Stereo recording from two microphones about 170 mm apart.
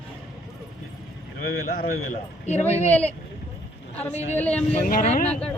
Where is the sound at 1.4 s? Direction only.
60° left (ahead or behind).